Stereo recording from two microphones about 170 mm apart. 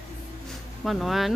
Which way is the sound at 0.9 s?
Centre (ahead or behind).